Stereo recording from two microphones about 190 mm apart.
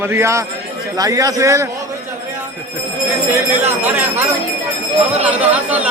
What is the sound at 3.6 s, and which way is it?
Speech, 10° right (ahead or behind).